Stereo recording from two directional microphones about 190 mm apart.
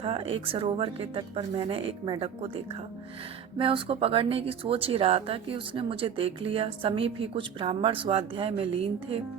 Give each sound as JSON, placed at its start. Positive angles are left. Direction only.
{"t": 0.0, "sound": "speech", "side_deg": -30}
{"t": 3.6, "sound": "speech", "side_deg": -30}